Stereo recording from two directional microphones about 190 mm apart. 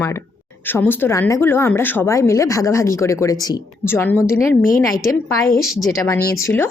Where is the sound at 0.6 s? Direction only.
10° left (ahead or behind).